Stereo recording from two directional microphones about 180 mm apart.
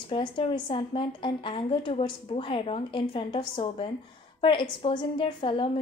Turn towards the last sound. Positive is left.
turn(degrees=30)  # may be behind; listen again after turning